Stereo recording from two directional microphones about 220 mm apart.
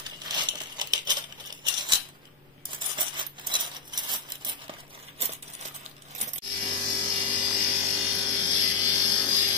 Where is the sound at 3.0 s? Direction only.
20° right (ahead or behind).